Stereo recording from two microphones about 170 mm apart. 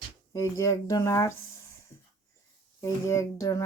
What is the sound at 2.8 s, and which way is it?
Speech, 20° left (ahead or behind).